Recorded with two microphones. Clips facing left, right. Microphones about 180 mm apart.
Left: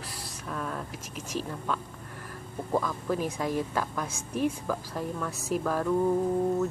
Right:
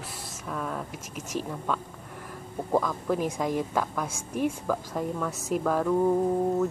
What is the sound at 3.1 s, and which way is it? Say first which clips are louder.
Speech: right 2 dB; 15° right (ahead or behind).